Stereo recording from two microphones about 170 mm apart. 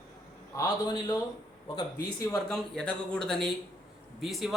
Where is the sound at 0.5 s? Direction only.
20° left (ahead or behind).